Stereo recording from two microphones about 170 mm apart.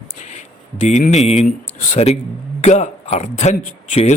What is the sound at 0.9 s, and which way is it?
Speech, 40° left (ahead or behind).